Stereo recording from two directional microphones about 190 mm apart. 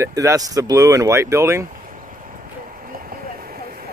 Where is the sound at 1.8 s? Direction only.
45° right (ahead or behind).